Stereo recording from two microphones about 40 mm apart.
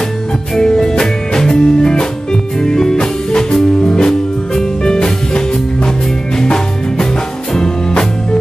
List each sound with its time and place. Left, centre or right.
0.6 s music: centre
6.4 s music: centre